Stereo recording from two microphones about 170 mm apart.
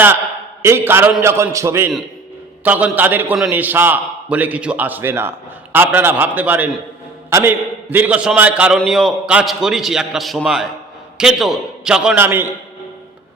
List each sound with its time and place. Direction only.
0.6 s a man's voice: 15° right (ahead or behind)